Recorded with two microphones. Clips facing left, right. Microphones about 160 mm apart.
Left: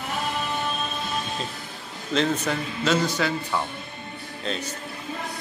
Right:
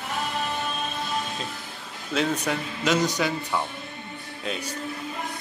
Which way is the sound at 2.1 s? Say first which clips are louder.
Left 1 dB; 10° right (ahead or behind).